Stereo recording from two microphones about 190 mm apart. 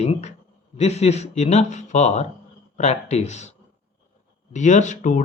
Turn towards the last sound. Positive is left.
turn(degrees=45)  # may be behind; listen again after turning